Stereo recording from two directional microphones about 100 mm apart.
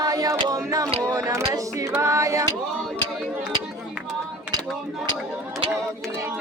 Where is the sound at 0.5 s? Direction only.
35° right (ahead or behind).